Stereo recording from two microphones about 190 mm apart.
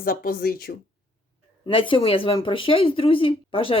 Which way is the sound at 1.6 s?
25° left (ahead or behind).